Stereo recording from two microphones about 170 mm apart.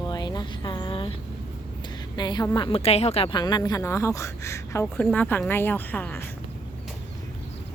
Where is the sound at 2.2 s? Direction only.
25° left (ahead or behind).